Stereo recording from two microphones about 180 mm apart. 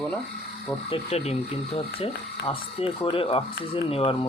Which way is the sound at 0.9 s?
35° left (ahead or behind).